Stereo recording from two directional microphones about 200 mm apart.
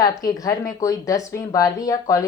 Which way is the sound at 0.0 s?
20° left (ahead or behind).